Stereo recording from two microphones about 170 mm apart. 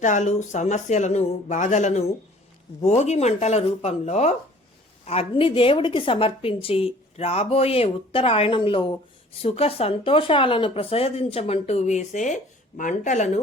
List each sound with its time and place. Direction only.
0.0 s speech: 45° left (ahead or behind)